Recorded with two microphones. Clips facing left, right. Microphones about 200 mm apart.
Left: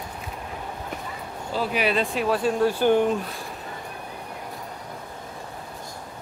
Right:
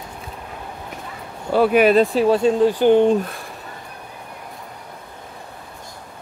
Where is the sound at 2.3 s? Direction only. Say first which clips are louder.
Right 6 dB; 20° right (ahead or behind).